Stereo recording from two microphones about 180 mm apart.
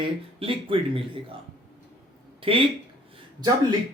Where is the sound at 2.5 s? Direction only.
30° right (ahead or behind).